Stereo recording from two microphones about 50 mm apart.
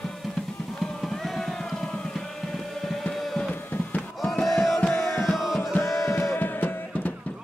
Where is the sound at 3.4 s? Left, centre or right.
Left.